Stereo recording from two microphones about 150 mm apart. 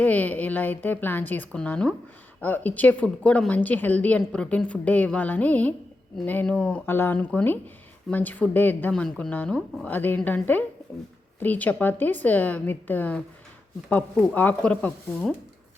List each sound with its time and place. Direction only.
0.0 s a woman's voice: 10° left (ahead or behind)
9.9 s a woman's voice: 15° left (ahead or behind)